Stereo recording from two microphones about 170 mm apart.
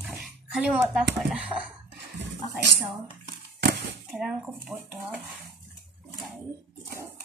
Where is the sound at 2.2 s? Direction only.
90° right.